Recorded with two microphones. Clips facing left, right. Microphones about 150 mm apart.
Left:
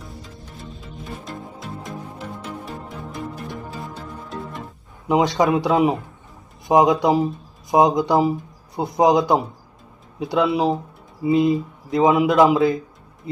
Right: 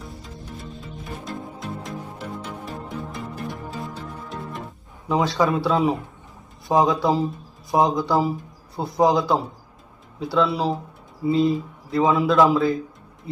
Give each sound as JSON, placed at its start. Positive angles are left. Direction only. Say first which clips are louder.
{"t": 0.0, "sound": "music", "louder": "right 1 dB", "side_deg": 0}
{"t": 5.0, "sound": "a man's voice", "louder": "left 3 dB", "side_deg": 15}